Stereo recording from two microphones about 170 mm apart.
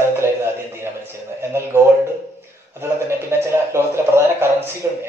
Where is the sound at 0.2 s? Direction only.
15° right (ahead or behind).